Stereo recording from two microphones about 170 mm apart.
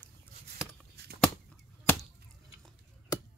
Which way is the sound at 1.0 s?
70° right (ahead or behind).